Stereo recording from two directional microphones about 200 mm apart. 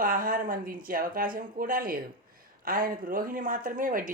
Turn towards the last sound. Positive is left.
turn(degrees=-45)  # may be behind; listen again after turning